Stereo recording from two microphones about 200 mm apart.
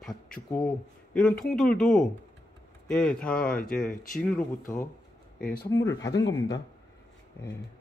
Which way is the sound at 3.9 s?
45° left (ahead or behind).